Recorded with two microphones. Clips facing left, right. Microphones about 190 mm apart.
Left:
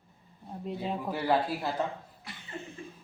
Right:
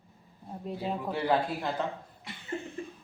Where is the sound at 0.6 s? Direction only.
Centre (ahead or behind).